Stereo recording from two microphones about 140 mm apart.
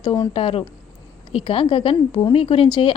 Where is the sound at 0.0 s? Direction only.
30° left (ahead or behind).